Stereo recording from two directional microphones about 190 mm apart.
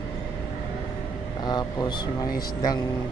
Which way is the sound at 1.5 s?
20° left (ahead or behind).